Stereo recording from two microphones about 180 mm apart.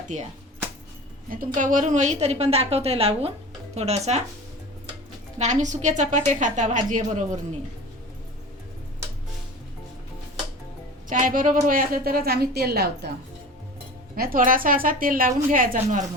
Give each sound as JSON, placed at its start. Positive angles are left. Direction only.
{"t": 0.1, "sound": "a woman's voice", "side_deg": -45}
{"t": 1.5, "sound": "a woman's voice", "side_deg": -45}
{"t": 5.4, "sound": "a woman's voice", "side_deg": -40}
{"t": 11.1, "sound": "a woman's voice", "side_deg": -45}
{"t": 14.2, "sound": "a woman's voice", "side_deg": -50}